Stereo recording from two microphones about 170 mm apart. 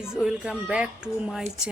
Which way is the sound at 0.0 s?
5° right (ahead or behind).